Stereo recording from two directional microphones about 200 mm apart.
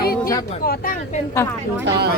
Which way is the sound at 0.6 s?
45° left (ahead or behind).